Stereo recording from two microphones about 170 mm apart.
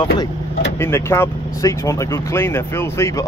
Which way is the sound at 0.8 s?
15° left (ahead or behind).